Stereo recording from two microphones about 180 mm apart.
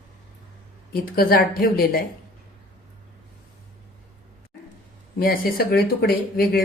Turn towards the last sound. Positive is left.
turn(degrees=60)  # may be behind; listen again after turning